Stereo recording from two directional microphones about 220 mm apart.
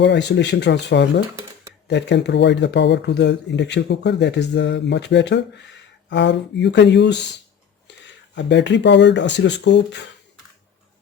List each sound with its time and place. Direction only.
0.0 s speech: 50° left (ahead or behind)